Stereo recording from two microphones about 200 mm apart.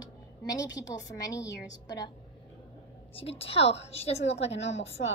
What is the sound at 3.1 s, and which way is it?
A woman's voice, 30° left (ahead or behind).